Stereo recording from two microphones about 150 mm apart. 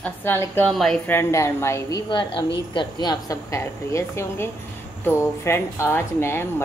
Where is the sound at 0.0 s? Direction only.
15° left (ahead or behind).